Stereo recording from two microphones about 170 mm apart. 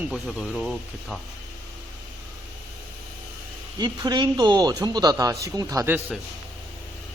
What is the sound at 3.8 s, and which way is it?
A man's voice, 25° right (ahead or behind).